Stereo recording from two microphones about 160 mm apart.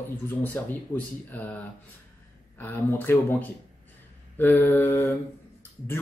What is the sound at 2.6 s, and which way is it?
Speech, 10° left (ahead or behind).